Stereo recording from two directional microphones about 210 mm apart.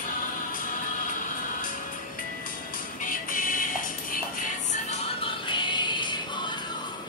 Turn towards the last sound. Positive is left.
turn(degrees=20)  # may be behind; listen again after turning